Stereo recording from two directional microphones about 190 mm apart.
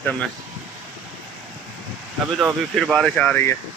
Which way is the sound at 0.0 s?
5° left (ahead or behind).